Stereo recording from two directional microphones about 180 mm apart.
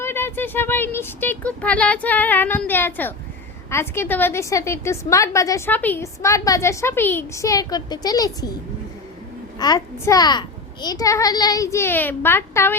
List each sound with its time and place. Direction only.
0.0 s a woman's voice: 15° left (ahead or behind)
9.6 s a child's voice: 20° left (ahead or behind)